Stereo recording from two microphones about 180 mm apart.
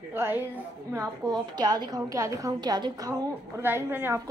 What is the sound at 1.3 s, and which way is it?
A woman's voice, 25° right (ahead or behind).